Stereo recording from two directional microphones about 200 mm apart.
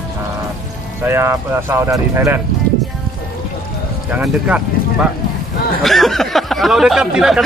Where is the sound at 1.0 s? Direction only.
10° right (ahead or behind).